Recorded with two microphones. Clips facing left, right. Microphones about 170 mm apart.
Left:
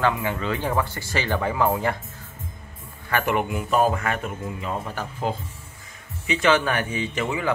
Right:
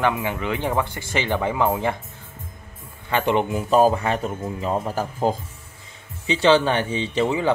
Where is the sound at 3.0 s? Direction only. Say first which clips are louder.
Right 3 dB; 25° right (ahead or behind).